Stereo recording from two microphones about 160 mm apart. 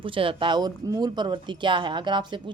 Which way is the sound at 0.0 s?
35° right (ahead or behind).